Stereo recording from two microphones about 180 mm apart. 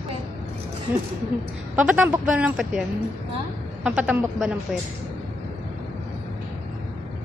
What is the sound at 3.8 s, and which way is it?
Speech, 5° right (ahead or behind).